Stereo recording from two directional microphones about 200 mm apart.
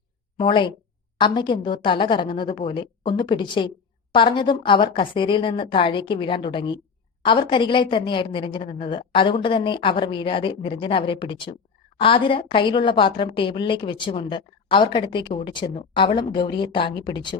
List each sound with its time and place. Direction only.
0.3 s a woman's voice: 25° left (ahead or behind)